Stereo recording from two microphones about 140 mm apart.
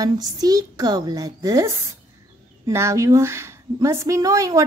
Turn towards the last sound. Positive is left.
turn(degrees=-25)  # may be behind; listen again after turning